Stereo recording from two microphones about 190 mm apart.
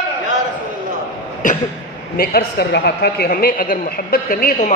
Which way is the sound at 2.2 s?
55° left (ahead or behind).